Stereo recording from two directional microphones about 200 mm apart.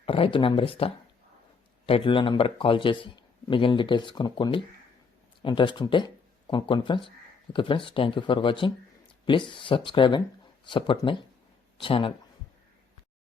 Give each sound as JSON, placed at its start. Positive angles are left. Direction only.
{"t": 0.0, "sound": "speech", "side_deg": 25}
{"t": 1.9, "sound": "speech", "side_deg": 25}